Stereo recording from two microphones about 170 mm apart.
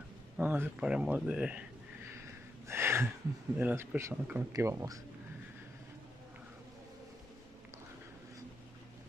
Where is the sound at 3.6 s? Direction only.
10° right (ahead or behind).